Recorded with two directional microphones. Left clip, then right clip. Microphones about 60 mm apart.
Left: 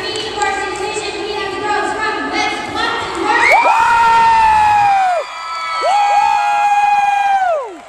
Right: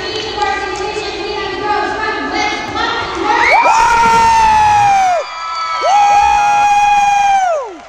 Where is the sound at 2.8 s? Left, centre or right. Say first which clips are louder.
Right 1 dB; left.